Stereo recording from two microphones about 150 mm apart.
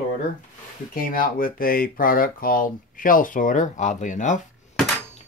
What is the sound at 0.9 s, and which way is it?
Speech, 70° left (ahead or behind).